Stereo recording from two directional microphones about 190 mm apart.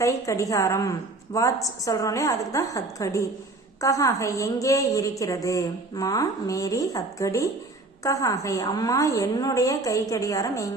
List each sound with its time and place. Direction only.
0.0 s a woman's voice: 15° left (ahead or behind)